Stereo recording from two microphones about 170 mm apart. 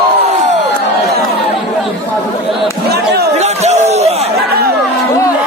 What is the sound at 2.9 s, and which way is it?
Chatter, 70° right (ahead or behind).